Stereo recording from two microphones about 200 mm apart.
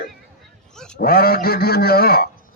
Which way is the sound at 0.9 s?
50° left (ahead or behind).